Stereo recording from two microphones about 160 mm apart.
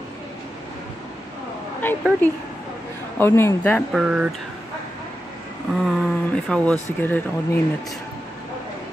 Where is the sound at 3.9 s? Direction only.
5° right (ahead or behind).